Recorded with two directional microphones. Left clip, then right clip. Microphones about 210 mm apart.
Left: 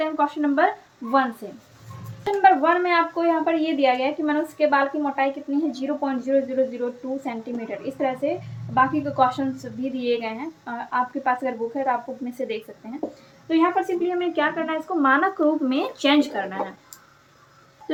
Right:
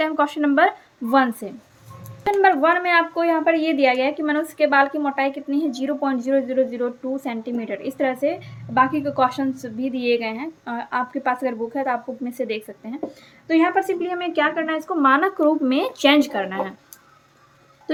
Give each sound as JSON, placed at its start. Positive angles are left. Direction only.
{"t": 0.0, "sound": "speech", "side_deg": -50}
{"t": 2.2, "sound": "a woman's voice", "side_deg": -35}